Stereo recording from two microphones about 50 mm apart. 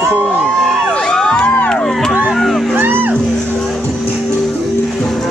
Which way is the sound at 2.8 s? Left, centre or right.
Right.